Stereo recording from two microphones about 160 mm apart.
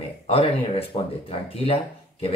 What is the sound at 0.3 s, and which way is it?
Speech, 40° left (ahead or behind).